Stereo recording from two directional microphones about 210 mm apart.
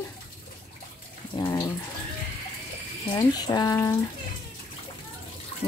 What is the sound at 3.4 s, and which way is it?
Speech, 20° left (ahead or behind).